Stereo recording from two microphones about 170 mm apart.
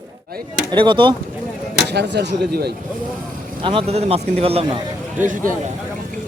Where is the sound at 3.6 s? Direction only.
35° right (ahead or behind).